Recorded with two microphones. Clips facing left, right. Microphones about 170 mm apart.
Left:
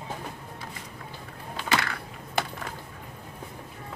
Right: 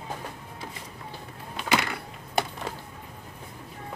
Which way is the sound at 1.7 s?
20° right (ahead or behind).